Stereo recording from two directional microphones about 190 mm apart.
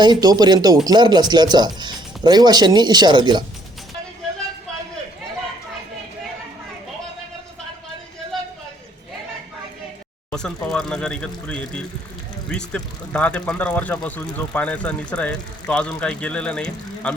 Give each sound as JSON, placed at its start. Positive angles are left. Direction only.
{"t": 0.0, "sound": "speech", "side_deg": -20}
{"t": 10.3, "sound": "speech", "side_deg": 5}